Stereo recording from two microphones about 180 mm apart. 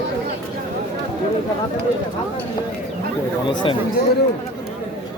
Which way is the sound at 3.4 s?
25° left (ahead or behind).